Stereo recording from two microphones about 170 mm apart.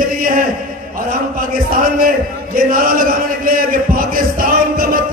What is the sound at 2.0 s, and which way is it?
A man's voice, 55° right (ahead or behind).